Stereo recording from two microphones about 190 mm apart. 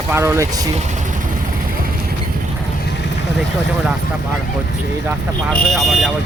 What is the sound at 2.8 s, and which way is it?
Vehicle, 60° left (ahead or behind).